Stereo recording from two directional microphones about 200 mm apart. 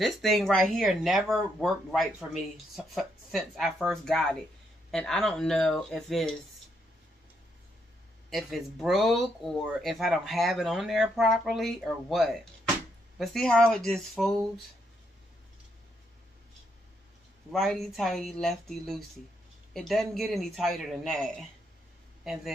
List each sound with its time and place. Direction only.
0.0 s speech: centre (ahead or behind)
8.3 s speech: centre (ahead or behind)
17.5 s a man's voice: centre (ahead or behind)